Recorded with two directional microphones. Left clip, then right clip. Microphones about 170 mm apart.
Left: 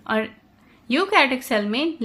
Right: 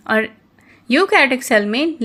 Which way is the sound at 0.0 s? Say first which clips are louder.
Right 6 dB; 30° right (ahead or behind).